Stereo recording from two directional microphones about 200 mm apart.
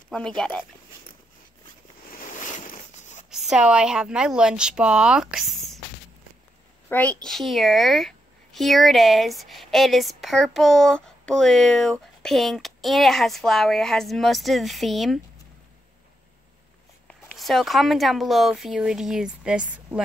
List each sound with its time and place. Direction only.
0.4 s speech: 5° left (ahead or behind)
2.0 s a sound: 40° left (ahead or behind)
3.3 s a woman's voice: centre (ahead or behind)
6.9 s a child's voice: 10° left (ahead or behind)
17.1 s speech: centre (ahead or behind)